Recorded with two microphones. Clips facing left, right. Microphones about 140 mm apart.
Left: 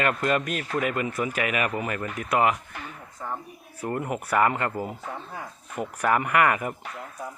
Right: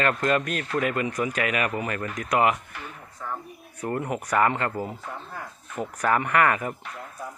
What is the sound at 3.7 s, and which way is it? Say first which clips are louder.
Speech: right 1 dB; 5° left (ahead or behind).